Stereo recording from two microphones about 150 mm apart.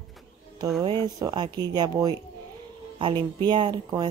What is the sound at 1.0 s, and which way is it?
Speech, 30° right (ahead or behind).